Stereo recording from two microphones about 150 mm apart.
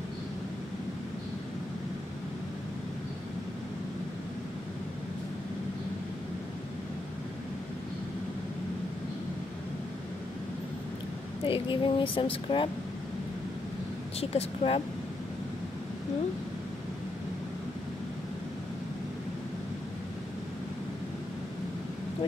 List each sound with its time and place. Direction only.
11.4 s speech: 35° left (ahead or behind)
14.2 s speech: 40° left (ahead or behind)